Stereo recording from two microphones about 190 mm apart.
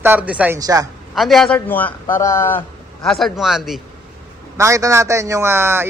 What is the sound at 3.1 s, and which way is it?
Speech, centre (ahead or behind).